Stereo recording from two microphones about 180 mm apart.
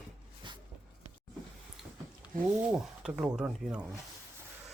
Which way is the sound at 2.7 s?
5° right (ahead or behind).